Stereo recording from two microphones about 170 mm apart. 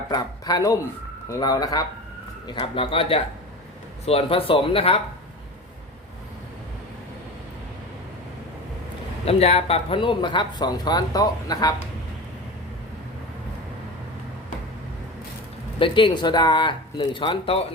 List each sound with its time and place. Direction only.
0.1 s speech: 20° left (ahead or behind)
9.2 s speech: 40° left (ahead or behind); by 11.7 s 20° left (ahead or behind)
15.8 s speech: 30° left (ahead or behind)